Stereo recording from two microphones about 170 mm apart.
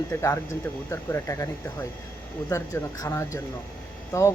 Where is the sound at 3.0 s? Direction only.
20° left (ahead or behind).